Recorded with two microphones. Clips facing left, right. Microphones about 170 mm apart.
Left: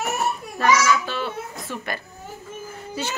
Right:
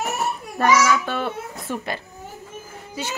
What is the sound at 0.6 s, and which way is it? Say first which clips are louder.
A child's voice: right 2 dB; 50° right (ahead or behind).